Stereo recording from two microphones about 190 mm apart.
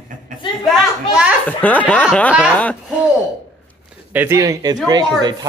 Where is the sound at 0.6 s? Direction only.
5° right (ahead or behind).